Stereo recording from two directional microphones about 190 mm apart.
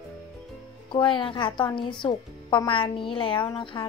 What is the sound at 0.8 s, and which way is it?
A woman's voice, 25° left (ahead or behind).